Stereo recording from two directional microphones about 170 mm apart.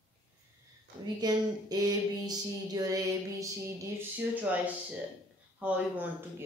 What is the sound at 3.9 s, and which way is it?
Speech, 10° right (ahead or behind).